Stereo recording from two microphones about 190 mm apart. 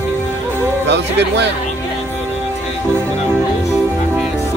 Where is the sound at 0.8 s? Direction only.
65° right (ahead or behind).